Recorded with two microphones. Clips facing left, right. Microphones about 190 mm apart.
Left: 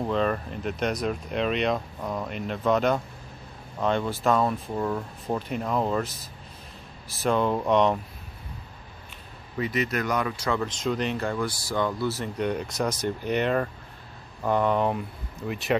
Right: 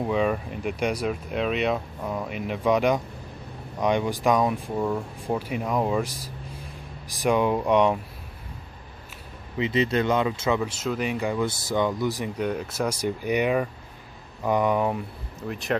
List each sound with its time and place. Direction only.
0.0 s speech: 10° right (ahead or behind)
9.6 s speech: 25° right (ahead or behind)
10.6 s speech: 5° right (ahead or behind)